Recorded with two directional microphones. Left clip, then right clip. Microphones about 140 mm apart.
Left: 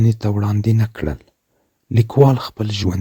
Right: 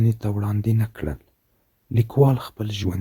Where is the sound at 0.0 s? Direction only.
35° left (ahead or behind).